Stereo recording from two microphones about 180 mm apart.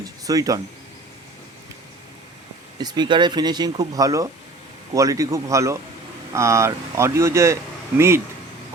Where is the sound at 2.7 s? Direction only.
25° right (ahead or behind).